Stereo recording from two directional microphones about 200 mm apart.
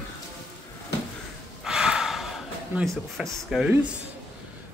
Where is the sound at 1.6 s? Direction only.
5° right (ahead or behind).